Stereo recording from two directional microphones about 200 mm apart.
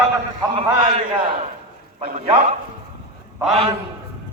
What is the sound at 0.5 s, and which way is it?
A man's voice, 25° right (ahead or behind).